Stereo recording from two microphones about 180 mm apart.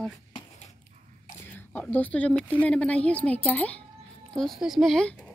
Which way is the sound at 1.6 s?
10° left (ahead or behind).